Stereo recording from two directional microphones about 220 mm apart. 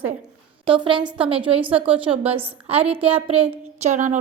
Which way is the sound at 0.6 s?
25° right (ahead or behind).